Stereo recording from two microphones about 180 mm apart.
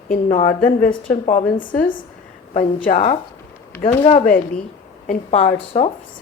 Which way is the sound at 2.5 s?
45° left (ahead or behind).